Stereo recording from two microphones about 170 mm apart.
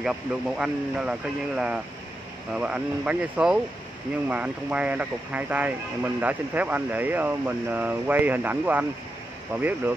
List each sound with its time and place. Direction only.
0.0 s speech: 5° right (ahead or behind)